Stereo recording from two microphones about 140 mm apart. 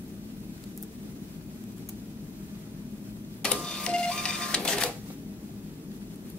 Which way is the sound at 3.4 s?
5° left (ahead or behind).